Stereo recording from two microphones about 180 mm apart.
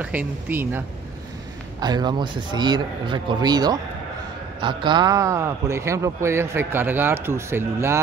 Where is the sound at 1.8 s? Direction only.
25° right (ahead or behind).